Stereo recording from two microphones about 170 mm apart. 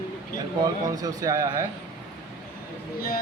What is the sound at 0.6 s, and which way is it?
A man's voice, 20° right (ahead or behind).